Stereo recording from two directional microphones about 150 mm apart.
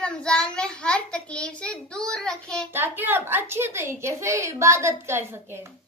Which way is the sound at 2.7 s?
15° right (ahead or behind).